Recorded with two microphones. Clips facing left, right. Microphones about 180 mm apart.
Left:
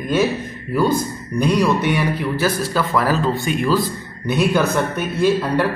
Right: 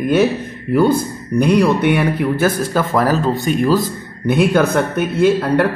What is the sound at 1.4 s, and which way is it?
Speech, 55° right (ahead or behind).